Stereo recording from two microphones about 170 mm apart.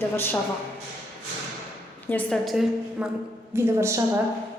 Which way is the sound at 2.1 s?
10° left (ahead or behind).